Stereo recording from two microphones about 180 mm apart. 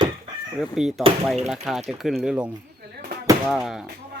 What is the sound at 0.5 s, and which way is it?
Speech, centre (ahead or behind).